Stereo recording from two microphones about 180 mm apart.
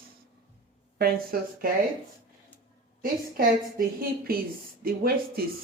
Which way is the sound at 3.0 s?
50° right (ahead or behind).